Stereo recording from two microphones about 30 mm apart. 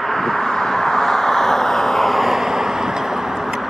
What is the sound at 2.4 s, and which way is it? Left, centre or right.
Vehicle, centre.